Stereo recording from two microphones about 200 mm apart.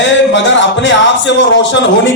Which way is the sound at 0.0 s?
65° left (ahead or behind).